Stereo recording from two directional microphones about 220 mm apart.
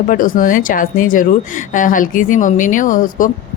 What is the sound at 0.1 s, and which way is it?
A woman's voice, 40° left (ahead or behind).